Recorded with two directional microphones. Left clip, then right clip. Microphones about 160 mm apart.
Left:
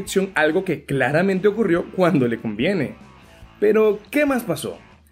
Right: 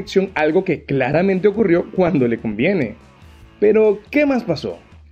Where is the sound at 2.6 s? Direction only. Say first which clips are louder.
Right 4 dB; 40° right (ahead or behind).